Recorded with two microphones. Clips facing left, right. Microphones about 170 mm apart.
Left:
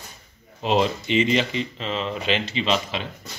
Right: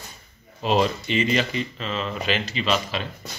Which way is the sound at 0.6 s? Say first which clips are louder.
Even; 20° left (ahead or behind).